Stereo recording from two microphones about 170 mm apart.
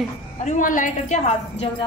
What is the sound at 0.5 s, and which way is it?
A woman's voice, 50° left (ahead or behind).